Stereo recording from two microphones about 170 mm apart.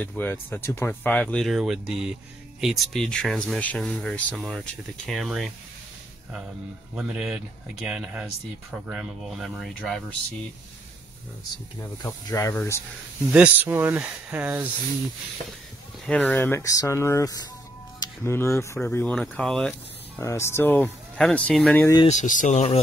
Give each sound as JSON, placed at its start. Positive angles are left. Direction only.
{"t": 0.0, "sound": "speech", "side_deg": 10}
{"t": 7.0, "sound": "speech", "side_deg": -5}
{"t": 12.0, "sound": "speech", "side_deg": 15}
{"t": 13.3, "sound": "speech", "side_deg": -10}
{"t": 16.1, "sound": "speech", "side_deg": 10}
{"t": 20.2, "sound": "speech", "side_deg": 15}
{"t": 22.0, "sound": "speech", "side_deg": 45}